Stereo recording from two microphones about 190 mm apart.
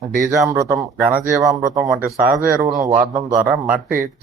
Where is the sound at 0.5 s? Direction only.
15° right (ahead or behind).